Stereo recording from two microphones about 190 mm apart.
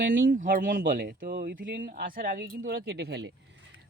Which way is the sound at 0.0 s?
45° right (ahead or behind).